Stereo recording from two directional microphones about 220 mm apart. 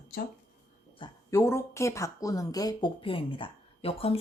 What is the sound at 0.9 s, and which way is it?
Speech, 15° left (ahead or behind).